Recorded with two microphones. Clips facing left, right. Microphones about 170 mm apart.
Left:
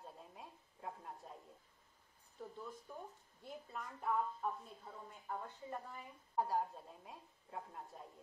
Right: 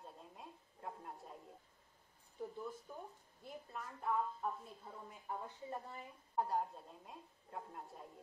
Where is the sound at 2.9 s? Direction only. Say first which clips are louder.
Even; 5° right (ahead or behind).